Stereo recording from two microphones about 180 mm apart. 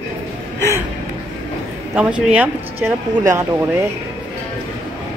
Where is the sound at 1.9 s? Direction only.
5° right (ahead or behind).